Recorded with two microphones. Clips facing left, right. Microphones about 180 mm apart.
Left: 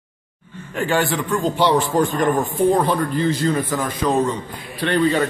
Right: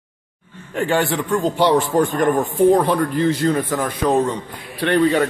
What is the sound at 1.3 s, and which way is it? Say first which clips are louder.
A man's voice: right 2 dB; 50° right (ahead or behind).